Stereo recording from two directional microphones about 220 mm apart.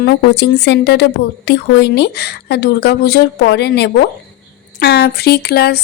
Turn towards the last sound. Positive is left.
turn(degrees=45)  # may be behind; listen again after turning